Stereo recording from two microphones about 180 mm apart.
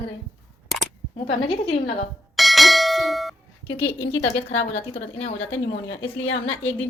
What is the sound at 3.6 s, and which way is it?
A woman's voice, 30° left (ahead or behind).